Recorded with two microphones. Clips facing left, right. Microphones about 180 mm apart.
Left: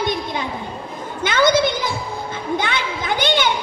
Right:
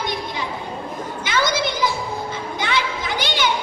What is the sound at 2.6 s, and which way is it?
Children playing, 55° left (ahead or behind).